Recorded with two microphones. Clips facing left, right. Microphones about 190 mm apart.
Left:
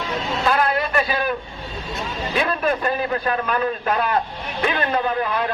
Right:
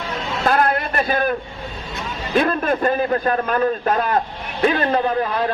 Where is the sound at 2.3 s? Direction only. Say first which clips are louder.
Right 4 dB; 45° right (ahead or behind).